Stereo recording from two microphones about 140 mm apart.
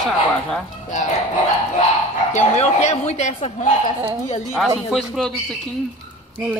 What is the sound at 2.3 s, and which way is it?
Speech, 55° left (ahead or behind).